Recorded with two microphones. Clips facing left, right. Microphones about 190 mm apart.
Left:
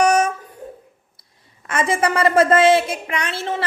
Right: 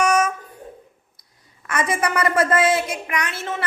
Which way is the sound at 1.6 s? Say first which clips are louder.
Left 3 dB; 25° left (ahead or behind).